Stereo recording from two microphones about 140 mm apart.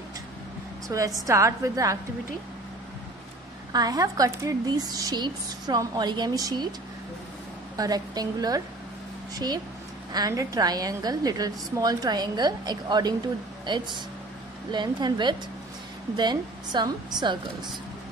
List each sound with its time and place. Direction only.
0.8 s a woman's voice: 25° right (ahead or behind)
3.7 s a woman's voice: 25° right (ahead or behind)
7.7 s a woman's voice: 25° right (ahead or behind)